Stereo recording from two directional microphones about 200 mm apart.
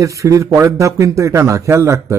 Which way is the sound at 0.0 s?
15° right (ahead or behind).